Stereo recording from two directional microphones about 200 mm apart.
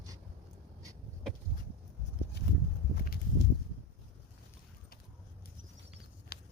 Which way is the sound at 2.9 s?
50° left (ahead or behind).